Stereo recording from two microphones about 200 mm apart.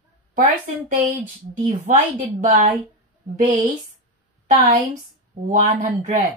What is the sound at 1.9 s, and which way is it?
Speech, 40° right (ahead or behind).